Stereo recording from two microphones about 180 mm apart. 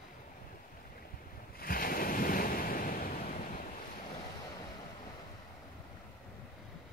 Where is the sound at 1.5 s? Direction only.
55° left (ahead or behind).